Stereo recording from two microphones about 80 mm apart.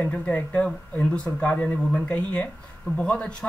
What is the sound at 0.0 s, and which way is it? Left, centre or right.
Speech, centre.